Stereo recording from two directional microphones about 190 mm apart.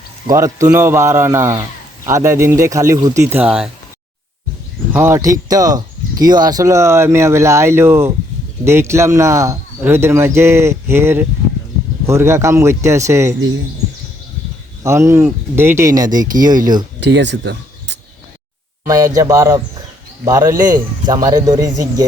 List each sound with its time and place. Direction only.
0.3 s speech: 15° right (ahead or behind)
4.9 s speech: 10° right (ahead or behind)
14.8 s speech: 15° right (ahead or behind)
16.3 s speech: 45° right (ahead or behind)
17.0 s speech: 70° right (ahead or behind)
19.1 s speech: 15° right (ahead or behind)